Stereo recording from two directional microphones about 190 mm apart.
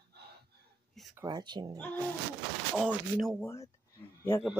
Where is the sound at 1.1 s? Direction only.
20° right (ahead or behind).